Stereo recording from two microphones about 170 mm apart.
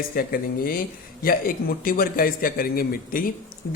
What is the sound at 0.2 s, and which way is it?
Speech, 60° left (ahead or behind).